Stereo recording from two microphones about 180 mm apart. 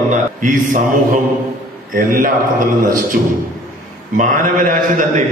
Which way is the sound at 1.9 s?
50° right (ahead or behind).